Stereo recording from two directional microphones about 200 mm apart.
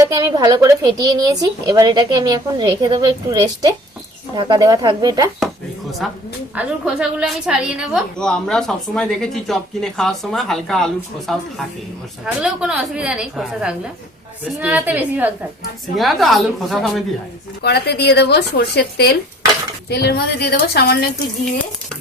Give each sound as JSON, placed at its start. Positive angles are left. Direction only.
{"t": 0.0, "sound": "a woman's voice", "side_deg": -20}
{"t": 6.0, "sound": "a woman's voice", "side_deg": 0}
{"t": 17.6, "sound": "a woman's voice", "side_deg": 55}